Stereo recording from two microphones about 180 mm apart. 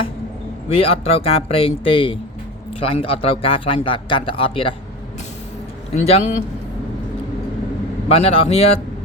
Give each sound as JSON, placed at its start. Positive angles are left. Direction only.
{"t": 0.7, "sound": "a man's voice", "side_deg": 30}
{"t": 5.9, "sound": "speech", "side_deg": 35}
{"t": 8.1, "sound": "speech", "side_deg": 35}